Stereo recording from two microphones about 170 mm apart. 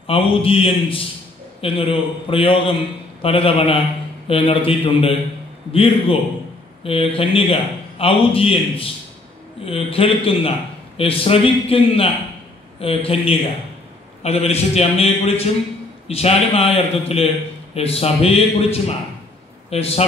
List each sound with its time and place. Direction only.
0.0 s a man's voice: 35° left (ahead or behind)